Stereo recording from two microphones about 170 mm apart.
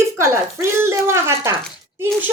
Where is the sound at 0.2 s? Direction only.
15° right (ahead or behind).